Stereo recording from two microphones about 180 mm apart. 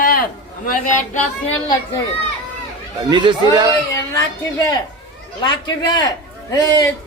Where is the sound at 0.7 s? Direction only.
45° left (ahead or behind).